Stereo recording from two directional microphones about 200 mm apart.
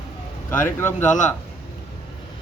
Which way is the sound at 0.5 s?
10° left (ahead or behind).